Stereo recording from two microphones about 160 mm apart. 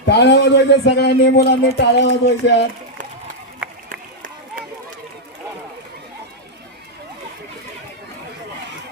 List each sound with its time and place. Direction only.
0.0 s a man's voice: 90° left